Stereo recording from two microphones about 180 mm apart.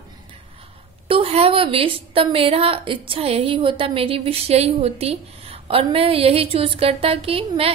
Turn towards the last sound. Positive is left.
turn(degrees=-30)  # may be behind; listen again after turning